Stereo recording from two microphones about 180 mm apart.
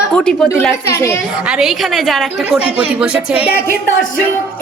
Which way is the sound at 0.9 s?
15° left (ahead or behind).